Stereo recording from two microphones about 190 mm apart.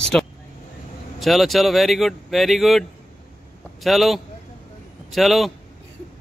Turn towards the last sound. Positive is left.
turn(degrees=0)  # may be behind; listen again after turning